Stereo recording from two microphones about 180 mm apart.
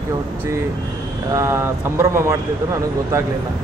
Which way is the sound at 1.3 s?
15° right (ahead or behind).